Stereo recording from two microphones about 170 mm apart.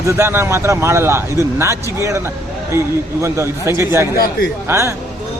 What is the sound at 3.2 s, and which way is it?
A man's voice, 15° right (ahead or behind).